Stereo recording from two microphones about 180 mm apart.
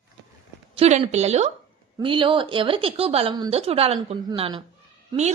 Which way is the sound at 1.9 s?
25° right (ahead or behind).